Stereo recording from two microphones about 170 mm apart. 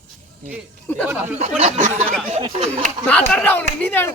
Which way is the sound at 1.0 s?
10° right (ahead or behind).